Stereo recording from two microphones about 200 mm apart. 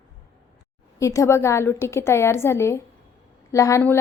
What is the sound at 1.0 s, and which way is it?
A woman's voice, 15° left (ahead or behind).